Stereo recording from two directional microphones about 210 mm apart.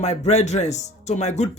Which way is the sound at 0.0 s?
30° left (ahead or behind).